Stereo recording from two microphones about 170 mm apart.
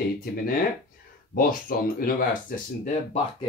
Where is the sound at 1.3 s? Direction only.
55° left (ahead or behind).